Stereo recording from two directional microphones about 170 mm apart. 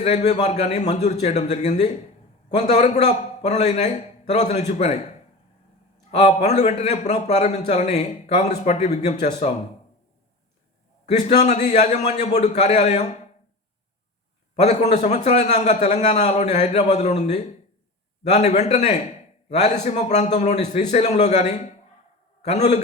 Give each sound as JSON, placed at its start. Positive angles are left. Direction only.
{"t": 0.0, "sound": "a man's voice", "side_deg": 40}
{"t": 6.1, "sound": "a man's voice", "side_deg": 40}
{"t": 11.0, "sound": "a man's voice", "side_deg": 45}
{"t": 14.5, "sound": "a man's voice", "side_deg": 40}